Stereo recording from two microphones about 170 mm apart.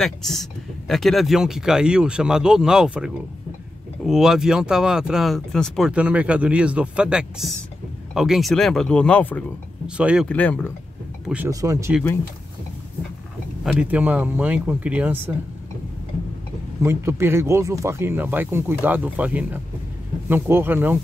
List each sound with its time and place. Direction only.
0.0 s speech: centre (ahead or behind)
9.8 s speech: 5° right (ahead or behind)
10.2 s speech: 10° left (ahead or behind)
11.2 s speech: 10° right (ahead or behind)
13.7 s speech: 5° right (ahead or behind)
16.8 s speech: 15° right (ahead or behind)